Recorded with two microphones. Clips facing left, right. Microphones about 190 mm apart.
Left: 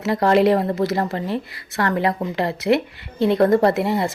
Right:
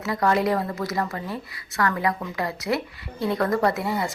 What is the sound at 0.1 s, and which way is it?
Speech, 30° left (ahead or behind).